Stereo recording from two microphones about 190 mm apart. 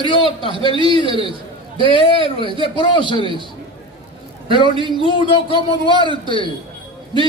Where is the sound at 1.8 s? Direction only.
25° left (ahead or behind).